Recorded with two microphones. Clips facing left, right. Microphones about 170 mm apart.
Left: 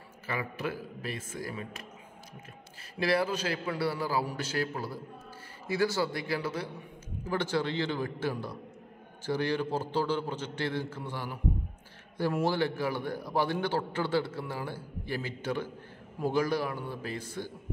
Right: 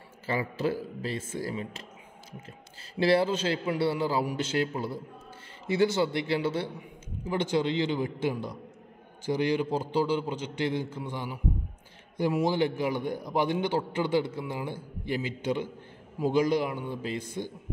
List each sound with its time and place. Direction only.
0.3 s a man's voice: 30° right (ahead or behind)
3.0 s a man's voice: 25° right (ahead or behind)